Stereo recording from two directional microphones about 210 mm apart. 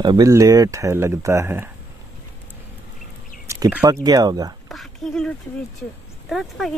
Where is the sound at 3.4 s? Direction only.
15° right (ahead or behind).